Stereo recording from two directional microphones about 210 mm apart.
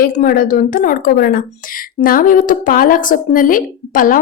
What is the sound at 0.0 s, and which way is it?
A woman's voice, 40° left (ahead or behind).